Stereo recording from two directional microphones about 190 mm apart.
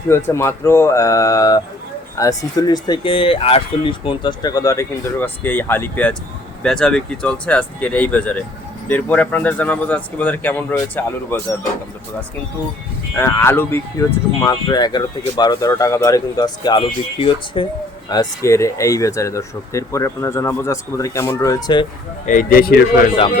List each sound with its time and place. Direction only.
0.1 s speech: 15° left (ahead or behind)
13.1 s speech: 15° left (ahead or behind)
22.3 s speech: 45° left (ahead or behind)